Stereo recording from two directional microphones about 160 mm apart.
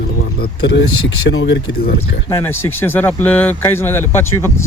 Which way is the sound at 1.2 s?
90° left.